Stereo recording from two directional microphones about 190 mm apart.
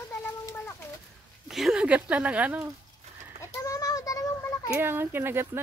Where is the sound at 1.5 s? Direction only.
Centre (ahead or behind).